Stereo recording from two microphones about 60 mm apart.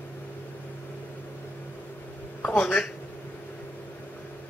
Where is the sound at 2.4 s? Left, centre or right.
Left.